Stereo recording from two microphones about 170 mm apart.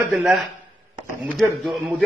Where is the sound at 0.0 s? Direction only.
Centre (ahead or behind).